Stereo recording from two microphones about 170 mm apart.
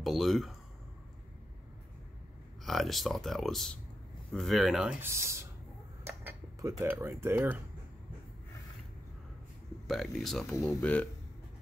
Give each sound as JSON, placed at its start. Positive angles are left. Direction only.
{"t": 0.0, "sound": "speech", "side_deg": 0}
{"t": 2.6, "sound": "speech", "side_deg": 0}
{"t": 5.0, "sound": "speech", "side_deg": -15}
{"t": 9.8, "sound": "speech", "side_deg": 0}